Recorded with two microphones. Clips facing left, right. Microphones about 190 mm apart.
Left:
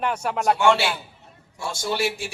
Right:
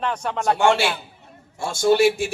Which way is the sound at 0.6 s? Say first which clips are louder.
Right 1 dB; 50° right (ahead or behind).